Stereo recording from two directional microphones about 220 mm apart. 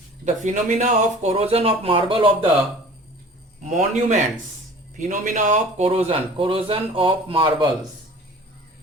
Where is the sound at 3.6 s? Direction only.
35° right (ahead or behind).